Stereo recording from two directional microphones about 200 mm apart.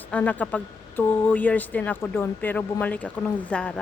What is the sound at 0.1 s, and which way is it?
Speech, 5° left (ahead or behind).